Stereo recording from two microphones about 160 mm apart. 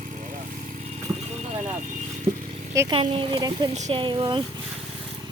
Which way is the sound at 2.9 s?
30° right (ahead or behind).